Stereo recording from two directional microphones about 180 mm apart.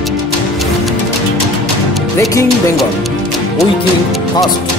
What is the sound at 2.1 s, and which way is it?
Speech, 20° left (ahead or behind).